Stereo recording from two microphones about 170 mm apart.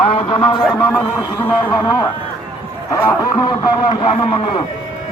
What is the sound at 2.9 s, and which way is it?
A man's voice, 20° left (ahead or behind).